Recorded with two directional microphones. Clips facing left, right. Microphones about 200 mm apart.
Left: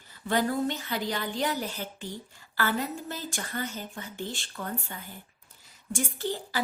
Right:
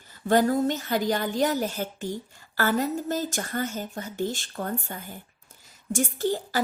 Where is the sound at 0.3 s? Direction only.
45° right (ahead or behind).